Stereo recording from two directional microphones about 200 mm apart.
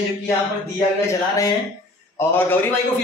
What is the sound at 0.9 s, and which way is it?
Speech, 15° left (ahead or behind).